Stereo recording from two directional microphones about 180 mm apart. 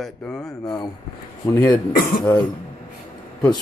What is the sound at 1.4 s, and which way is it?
Speech, 20° left (ahead or behind).